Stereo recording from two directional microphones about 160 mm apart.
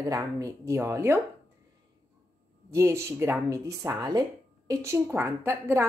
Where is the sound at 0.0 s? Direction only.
20° right (ahead or behind).